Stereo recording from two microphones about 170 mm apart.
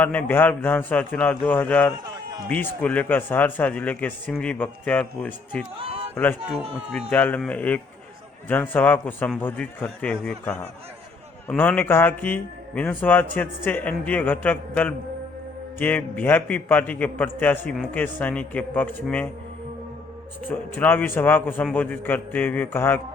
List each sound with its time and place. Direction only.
0.0 s speech: 10° left (ahead or behind)
7.1 s speech: 10° left (ahead or behind)
20.5 s speech: 10° left (ahead or behind)